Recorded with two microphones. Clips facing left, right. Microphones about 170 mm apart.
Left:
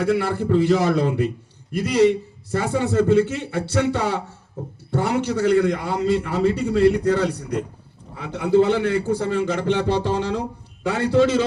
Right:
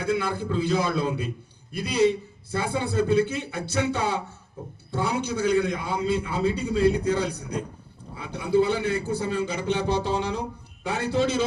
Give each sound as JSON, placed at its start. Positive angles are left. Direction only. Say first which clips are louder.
{"t": 0.0, "sound": "a man's voice", "louder": "left 5 dB", "side_deg": 80}